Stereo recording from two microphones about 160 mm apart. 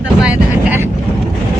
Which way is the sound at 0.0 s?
5° right (ahead or behind).